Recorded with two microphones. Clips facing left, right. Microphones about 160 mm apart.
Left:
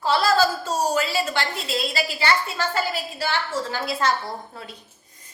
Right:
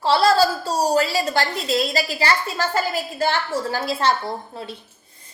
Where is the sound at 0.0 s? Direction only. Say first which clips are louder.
Right 3 dB; 30° right (ahead or behind).